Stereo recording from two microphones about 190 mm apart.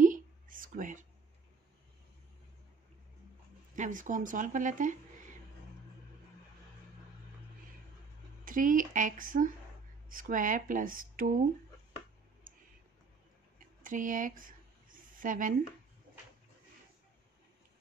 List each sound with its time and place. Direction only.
0.0 s whispering: 45° right (ahead or behind)
3.7 s speech: 40° right (ahead or behind)
8.5 s speech: 45° right (ahead or behind)
12.5 s clicking: 45° right (ahead or behind)
13.8 s a sound: 45° right (ahead or behind)